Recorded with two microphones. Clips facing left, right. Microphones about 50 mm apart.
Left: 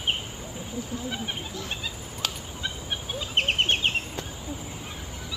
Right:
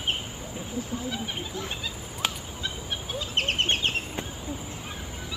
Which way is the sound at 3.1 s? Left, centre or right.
Centre.